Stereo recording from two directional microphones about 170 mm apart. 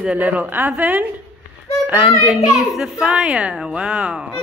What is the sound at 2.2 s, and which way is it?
A child's voice, 5° right (ahead or behind).